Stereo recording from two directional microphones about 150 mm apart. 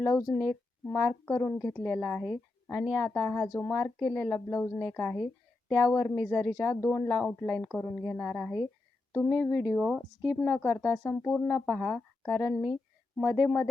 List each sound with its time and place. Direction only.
0.0 s speech: 20° left (ahead or behind)